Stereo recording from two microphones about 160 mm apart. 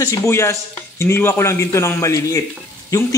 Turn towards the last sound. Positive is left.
turn(degrees=20)  # may be behind; listen again after turning